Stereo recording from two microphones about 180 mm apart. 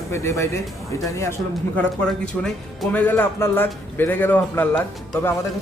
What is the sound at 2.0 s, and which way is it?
Speech, centre (ahead or behind).